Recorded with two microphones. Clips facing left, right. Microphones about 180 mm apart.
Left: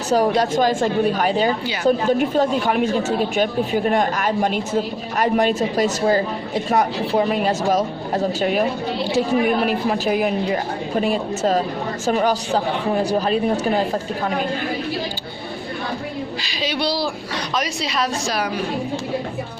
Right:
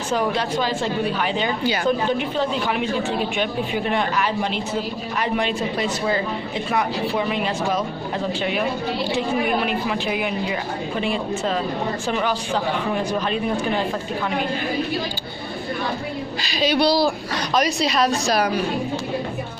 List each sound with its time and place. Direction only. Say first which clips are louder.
0.1 s a woman's voice: left 5 dB; 40° left (ahead or behind)
16.4 s a woman's voice: right 6 dB; 45° right (ahead or behind)